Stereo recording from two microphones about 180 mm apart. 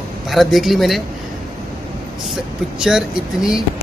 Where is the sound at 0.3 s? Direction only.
Centre (ahead or behind).